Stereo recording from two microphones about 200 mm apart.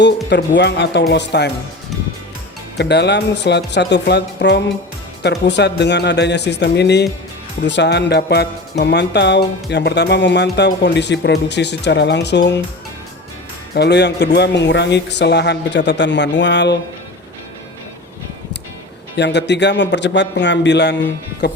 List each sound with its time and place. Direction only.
0.3 s speech: 60° left (ahead or behind)
2.7 s speech: 55° left (ahead or behind)
13.7 s speech: 55° left (ahead or behind)
19.1 s speech: 60° left (ahead or behind)